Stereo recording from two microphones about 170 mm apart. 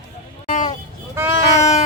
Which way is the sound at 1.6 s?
40° left (ahead or behind).